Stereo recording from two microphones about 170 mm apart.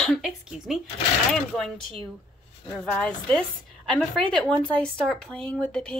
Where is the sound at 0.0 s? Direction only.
Centre (ahead or behind).